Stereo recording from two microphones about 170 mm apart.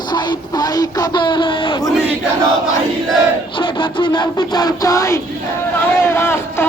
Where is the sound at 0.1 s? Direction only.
25° left (ahead or behind).